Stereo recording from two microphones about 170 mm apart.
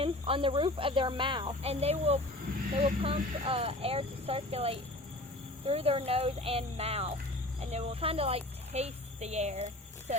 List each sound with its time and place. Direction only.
0.0 s speech: 30° right (ahead or behind)